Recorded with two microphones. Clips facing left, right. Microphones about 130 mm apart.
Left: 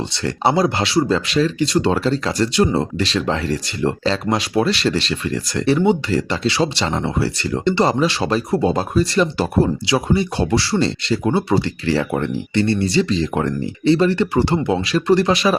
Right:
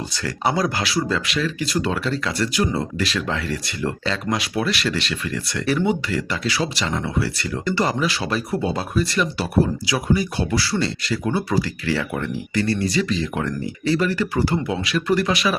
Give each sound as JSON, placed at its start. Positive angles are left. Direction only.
{"t": 0.1, "sound": "speech", "side_deg": 25}